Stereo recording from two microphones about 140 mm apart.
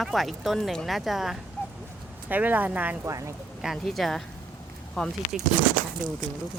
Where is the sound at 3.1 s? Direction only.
20° right (ahead or behind).